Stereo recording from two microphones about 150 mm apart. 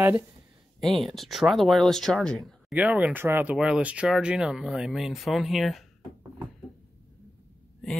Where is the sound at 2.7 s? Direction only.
10° right (ahead or behind).